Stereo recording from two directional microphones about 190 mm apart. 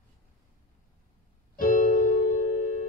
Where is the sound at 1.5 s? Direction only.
45° left (ahead or behind).